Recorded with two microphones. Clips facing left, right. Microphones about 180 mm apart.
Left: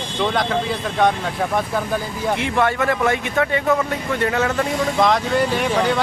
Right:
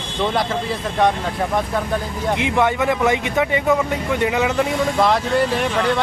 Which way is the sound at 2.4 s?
15° right (ahead or behind).